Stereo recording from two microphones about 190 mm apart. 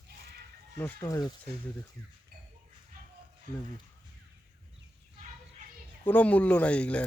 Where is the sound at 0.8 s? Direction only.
10° left (ahead or behind).